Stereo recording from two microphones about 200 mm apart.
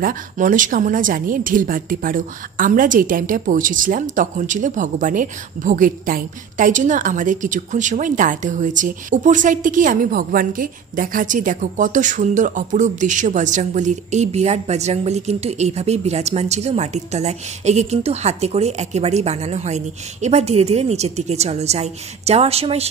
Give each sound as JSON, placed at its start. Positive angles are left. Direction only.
{"t": 0.0, "sound": "a woman's voice", "side_deg": -40}